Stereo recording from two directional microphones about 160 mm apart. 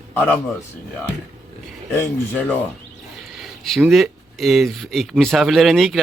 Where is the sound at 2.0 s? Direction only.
10° left (ahead or behind).